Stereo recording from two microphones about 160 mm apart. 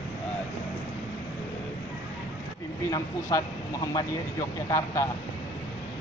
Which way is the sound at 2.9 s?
20° left (ahead or behind).